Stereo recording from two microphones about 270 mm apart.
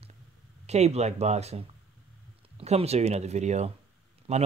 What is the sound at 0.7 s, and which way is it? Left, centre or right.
Speech, right.